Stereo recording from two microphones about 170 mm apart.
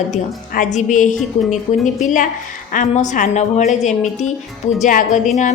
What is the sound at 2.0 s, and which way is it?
A woman's voice, 45° left (ahead or behind).